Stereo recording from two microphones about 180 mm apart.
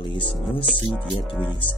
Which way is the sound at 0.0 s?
25° left (ahead or behind).